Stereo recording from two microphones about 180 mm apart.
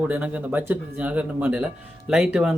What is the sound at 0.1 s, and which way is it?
Speech, 10° right (ahead or behind).